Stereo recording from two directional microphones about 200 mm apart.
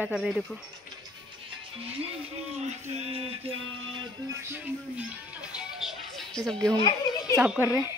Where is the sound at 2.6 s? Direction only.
30° right (ahead or behind).